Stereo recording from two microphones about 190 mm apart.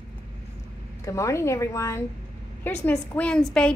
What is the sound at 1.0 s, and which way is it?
A woman's voice, 15° left (ahead or behind).